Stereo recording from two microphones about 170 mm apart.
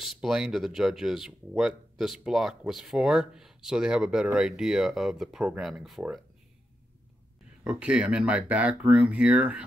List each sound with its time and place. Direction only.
0.0 s speech: centre (ahead or behind)
7.6 s speech: 5° right (ahead or behind)